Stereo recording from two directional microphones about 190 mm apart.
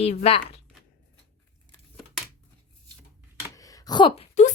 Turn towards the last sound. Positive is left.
turn(degrees=35)  # may be behind; listen again after turning